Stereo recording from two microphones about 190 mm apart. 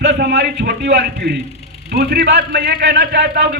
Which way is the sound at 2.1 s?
55° right (ahead or behind).